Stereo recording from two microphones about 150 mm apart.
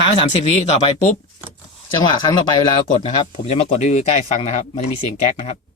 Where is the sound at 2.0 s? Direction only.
30° left (ahead or behind).